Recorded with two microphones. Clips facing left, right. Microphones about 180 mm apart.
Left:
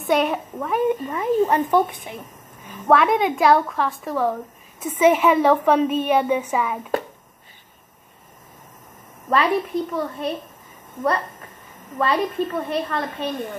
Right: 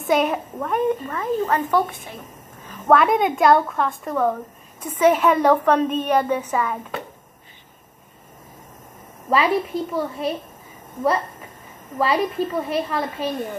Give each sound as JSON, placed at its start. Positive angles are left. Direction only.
{"t": 0.0, "sound": "a woman's voice", "side_deg": 0}
{"t": 2.9, "sound": "a woman's voice", "side_deg": 0}
{"t": 9.3, "sound": "a woman's voice", "side_deg": -5}
{"t": 12.0, "sound": "a woman's voice", "side_deg": -5}